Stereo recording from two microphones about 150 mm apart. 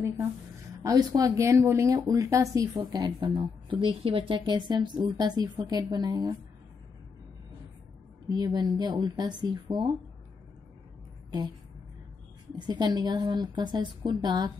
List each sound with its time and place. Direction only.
0.8 s speech: 25° right (ahead or behind)
8.3 s speech: 30° right (ahead or behind)
12.5 s speech: 30° right (ahead or behind)